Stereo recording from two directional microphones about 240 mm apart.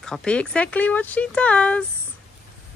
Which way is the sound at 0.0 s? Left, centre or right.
Centre.